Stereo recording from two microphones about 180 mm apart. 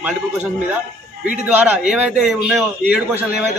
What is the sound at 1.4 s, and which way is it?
A man's voice, 10° right (ahead or behind).